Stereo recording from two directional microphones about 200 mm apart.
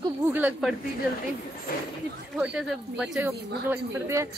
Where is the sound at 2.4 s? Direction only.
5° right (ahead or behind).